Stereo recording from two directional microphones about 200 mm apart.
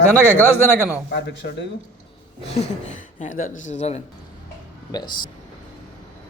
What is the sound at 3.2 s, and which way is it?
Speech, 40° left (ahead or behind).